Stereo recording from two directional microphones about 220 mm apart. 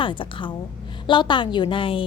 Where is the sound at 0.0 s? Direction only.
25° left (ahead or behind).